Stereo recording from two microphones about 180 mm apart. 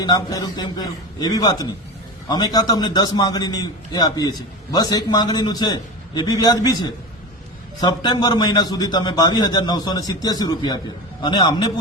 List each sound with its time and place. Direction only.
0.0 s a man's voice: 20° left (ahead or behind)